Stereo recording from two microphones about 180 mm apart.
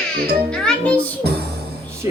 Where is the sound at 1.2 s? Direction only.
65° right (ahead or behind).